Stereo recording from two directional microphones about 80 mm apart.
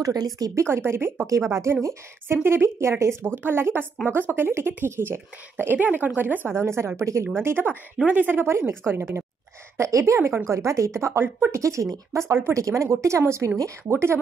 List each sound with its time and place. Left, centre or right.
0.0 s speech: right
0.6 s a woman's voice: right
1.2 s a woman's voice: right
9.8 s a woman's voice: right
11.5 s a woman's voice: right